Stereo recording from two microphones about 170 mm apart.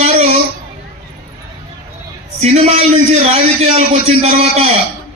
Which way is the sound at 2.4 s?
40° right (ahead or behind).